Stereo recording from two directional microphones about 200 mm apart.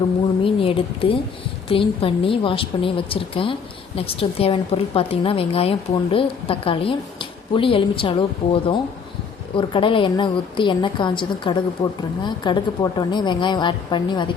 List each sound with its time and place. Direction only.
0.4 s a woman's voice: 25° left (ahead or behind)